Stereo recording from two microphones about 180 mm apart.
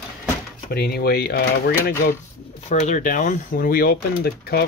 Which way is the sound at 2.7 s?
40° left (ahead or behind).